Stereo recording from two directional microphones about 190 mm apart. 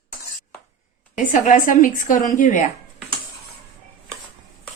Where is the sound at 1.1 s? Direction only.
40° left (ahead or behind).